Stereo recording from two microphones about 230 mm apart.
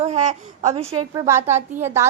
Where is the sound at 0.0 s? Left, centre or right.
Right.